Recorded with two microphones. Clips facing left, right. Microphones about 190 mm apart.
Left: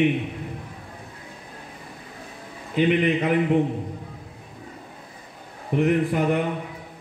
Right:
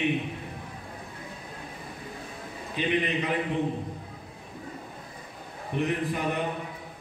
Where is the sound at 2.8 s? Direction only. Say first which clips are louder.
Left 7 dB; 60° left (ahead or behind).